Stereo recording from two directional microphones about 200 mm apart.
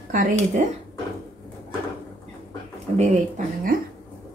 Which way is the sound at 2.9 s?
35° right (ahead or behind).